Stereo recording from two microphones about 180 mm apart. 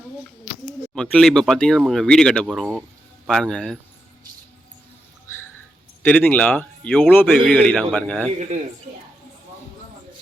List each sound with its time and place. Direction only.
0.9 s speech: 5° left (ahead or behind)
6.1 s speech: 10° left (ahead or behind)